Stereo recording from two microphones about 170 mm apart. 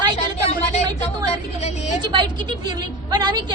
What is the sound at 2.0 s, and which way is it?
A woman's voice, 25° right (ahead or behind).